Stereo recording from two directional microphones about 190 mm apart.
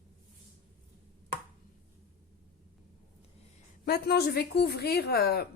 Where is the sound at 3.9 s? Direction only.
55° left (ahead or behind).